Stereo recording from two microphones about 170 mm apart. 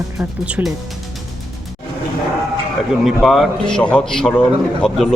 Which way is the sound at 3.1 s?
Centre (ahead or behind).